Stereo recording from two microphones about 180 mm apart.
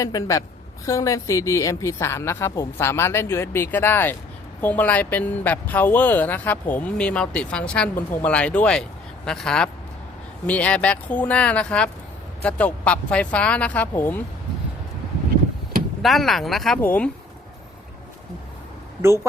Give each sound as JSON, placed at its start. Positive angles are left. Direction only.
{"t": 0.0, "sound": "a woman's voice", "side_deg": 20}
{"t": 16.0, "sound": "speech", "side_deg": 0}
{"t": 19.0, "sound": "speech", "side_deg": -15}